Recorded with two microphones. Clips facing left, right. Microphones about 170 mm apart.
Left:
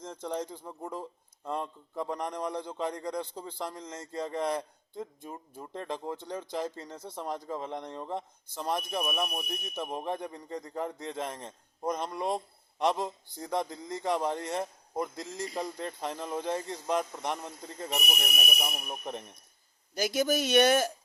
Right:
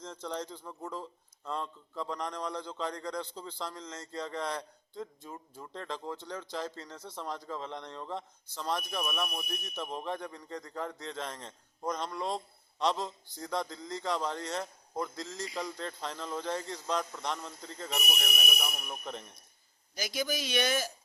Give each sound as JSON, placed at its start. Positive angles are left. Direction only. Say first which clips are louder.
{"t": 0.5, "sound": "a man's voice", "louder": "left 2 dB", "side_deg": 15}
{"t": 15.4, "sound": "speech", "louder": "left 3 dB", "side_deg": 45}
{"t": 15.8, "sound": "speech", "louder": "left 3 dB", "side_deg": 15}
{"t": 20.0, "sound": "speech", "louder": "left 7 dB", "side_deg": 50}